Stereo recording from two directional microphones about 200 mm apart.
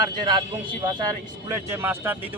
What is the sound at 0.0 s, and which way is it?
Speech, 20° right (ahead or behind).